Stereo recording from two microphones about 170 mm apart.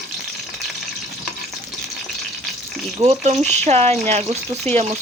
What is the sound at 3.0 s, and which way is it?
Speech, 40° right (ahead or behind).